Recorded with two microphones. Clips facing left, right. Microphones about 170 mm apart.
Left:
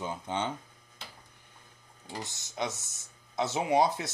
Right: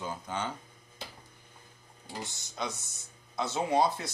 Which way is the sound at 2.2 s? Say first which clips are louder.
Left 2 dB; 20° left (ahead or behind).